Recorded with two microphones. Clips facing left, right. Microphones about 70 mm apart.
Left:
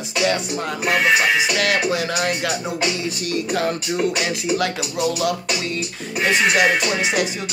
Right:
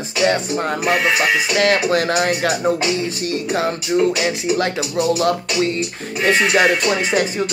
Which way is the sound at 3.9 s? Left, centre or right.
Centre.